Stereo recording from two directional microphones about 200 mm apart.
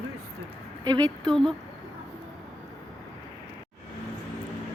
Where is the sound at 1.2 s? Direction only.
5° left (ahead or behind).